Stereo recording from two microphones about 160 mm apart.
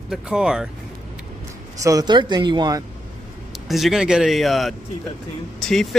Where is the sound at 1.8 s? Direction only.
25° right (ahead or behind).